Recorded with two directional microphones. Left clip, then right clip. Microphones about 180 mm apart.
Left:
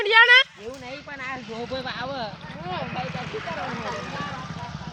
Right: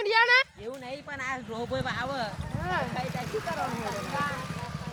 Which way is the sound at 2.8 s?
35° right (ahead or behind).